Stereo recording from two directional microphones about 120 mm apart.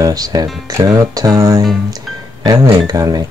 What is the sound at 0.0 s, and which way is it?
Music, 30° right (ahead or behind).